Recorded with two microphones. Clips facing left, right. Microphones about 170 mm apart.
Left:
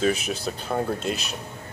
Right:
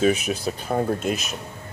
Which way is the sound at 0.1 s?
30° left (ahead or behind).